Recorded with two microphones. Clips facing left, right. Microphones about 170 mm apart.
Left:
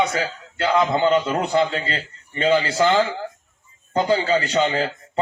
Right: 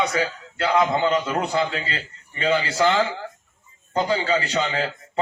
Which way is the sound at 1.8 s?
40° left (ahead or behind).